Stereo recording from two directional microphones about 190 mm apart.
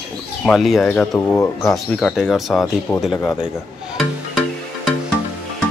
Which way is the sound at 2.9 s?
15° left (ahead or behind).